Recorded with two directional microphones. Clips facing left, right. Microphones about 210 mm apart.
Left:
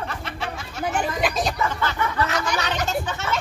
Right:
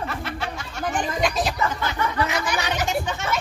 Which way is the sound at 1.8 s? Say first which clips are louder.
Even; 15° right (ahead or behind).